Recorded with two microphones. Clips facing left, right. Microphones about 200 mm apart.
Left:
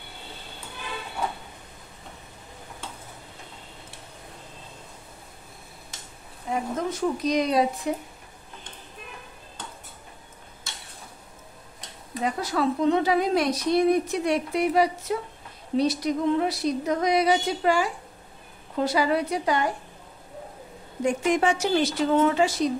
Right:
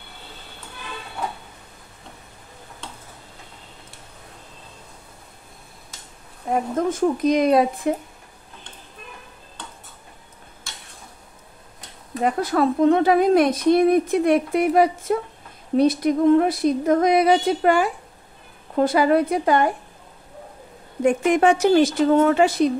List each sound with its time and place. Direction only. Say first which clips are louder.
6.5 s a woman's voice: right 6 dB; 50° right (ahead or behind)
12.2 s a woman's voice: right 6 dB; 55° right (ahead or behind)
21.0 s a woman's voice: right 5 dB; 55° right (ahead or behind)